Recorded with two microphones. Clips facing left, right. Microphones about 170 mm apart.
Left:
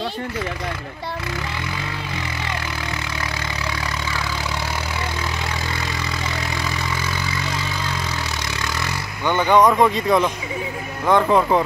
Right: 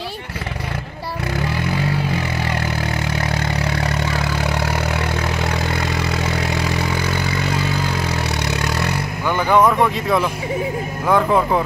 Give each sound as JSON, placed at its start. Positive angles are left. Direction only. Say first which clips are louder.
{"t": 3.4, "sound": "vehicle", "louder": "right 6 dB", "side_deg": -60}
{"t": 9.3, "sound": "speech", "louder": "even", "side_deg": -5}